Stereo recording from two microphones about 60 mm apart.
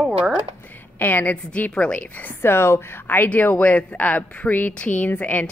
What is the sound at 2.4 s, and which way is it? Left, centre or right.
Speech, left.